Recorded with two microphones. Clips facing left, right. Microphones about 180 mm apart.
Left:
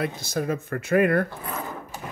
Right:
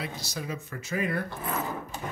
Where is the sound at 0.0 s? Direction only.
55° left (ahead or behind).